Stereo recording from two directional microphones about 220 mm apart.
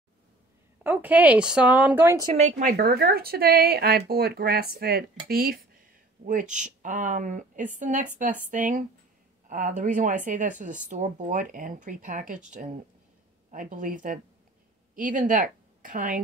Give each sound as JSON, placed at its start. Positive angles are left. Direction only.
{"t": 0.8, "sound": "speech", "side_deg": -5}
{"t": 2.3, "sound": "speech", "side_deg": -30}
{"t": 2.7, "sound": "a woman's voice", "side_deg": -45}